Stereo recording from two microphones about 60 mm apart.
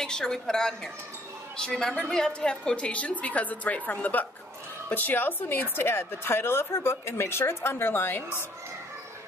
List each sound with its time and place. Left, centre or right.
0.0 s a woman's voice: centre; by 8.2 s left